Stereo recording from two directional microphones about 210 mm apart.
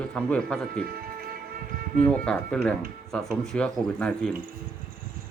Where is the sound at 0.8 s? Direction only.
45° right (ahead or behind).